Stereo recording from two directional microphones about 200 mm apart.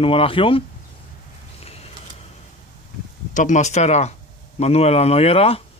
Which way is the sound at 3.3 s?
40° left (ahead or behind).